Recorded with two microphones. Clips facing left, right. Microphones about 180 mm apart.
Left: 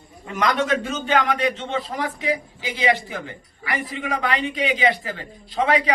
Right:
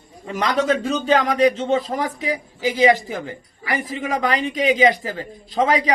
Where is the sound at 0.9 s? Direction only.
35° right (ahead or behind).